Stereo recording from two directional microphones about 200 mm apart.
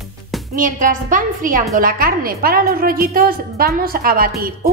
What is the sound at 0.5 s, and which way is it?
A woman's voice, 40° right (ahead or behind).